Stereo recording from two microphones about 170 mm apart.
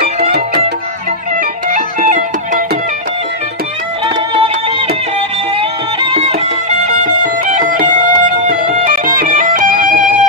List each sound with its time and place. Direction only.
0.0 s music: 70° right (ahead or behind)
1.7 s music: 45° right (ahead or behind)
4.0 s music: 35° right (ahead or behind)
7.4 s music: 50° right (ahead or behind)